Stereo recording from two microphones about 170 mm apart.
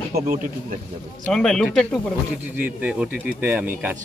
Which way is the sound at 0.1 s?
65° right (ahead or behind).